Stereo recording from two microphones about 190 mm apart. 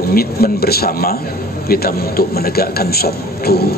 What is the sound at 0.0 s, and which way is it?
Speech, 50° left (ahead or behind).